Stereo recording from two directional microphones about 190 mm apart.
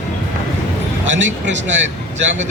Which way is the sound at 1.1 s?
80° right.